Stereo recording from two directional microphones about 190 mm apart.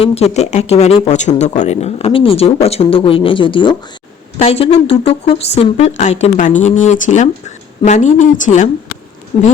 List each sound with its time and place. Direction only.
0.0 s a woman's voice: 35° left (ahead or behind)